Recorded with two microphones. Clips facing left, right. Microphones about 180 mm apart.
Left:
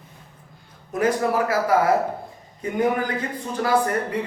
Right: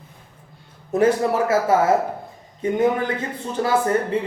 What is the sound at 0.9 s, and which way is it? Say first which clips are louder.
Speech: right 3 dB; 25° right (ahead or behind).